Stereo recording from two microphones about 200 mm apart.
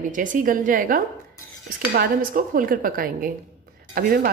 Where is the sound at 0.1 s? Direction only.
40° right (ahead or behind).